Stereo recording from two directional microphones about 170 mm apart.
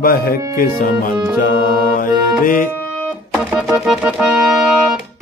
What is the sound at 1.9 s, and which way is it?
Music, 55° left (ahead or behind).